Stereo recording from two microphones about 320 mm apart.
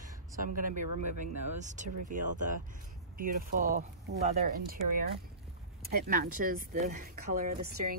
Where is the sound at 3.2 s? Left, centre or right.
Right.